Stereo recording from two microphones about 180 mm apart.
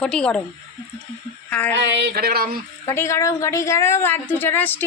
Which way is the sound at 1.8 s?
70° right (ahead or behind).